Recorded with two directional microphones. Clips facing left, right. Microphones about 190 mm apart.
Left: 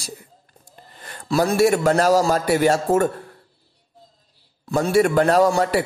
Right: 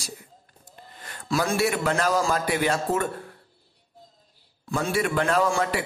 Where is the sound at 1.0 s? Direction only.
35° left (ahead or behind).